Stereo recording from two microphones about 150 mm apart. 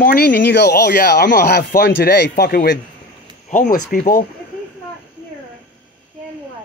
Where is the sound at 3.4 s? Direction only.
65° left (ahead or behind).